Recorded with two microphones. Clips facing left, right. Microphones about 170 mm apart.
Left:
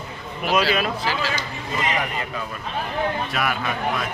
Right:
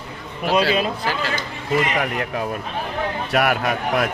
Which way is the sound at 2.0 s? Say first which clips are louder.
Right 5 dB; 75° right (ahead or behind).